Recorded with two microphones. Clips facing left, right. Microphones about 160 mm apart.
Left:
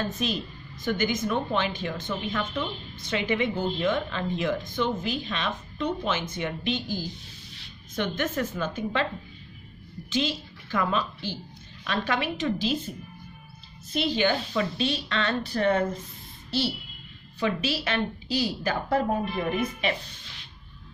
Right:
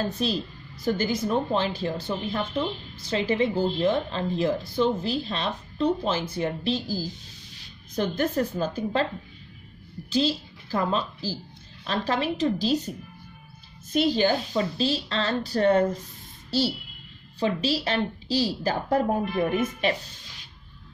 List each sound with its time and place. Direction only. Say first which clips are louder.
0.0 s a woman's voice: right 2 dB; 35° right (ahead or behind)
10.0 s a woman's voice: right 4 dB; 35° right (ahead or behind)
17.4 s a woman's voice: right 2 dB; 35° right (ahead or behind)